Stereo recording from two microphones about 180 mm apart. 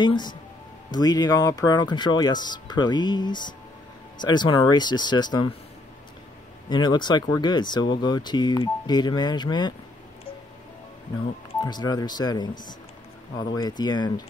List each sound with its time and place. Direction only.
0.0 s speech: 25° left (ahead or behind)
6.7 s speech: 25° left (ahead or behind)
11.6 s speech: 25° left (ahead or behind)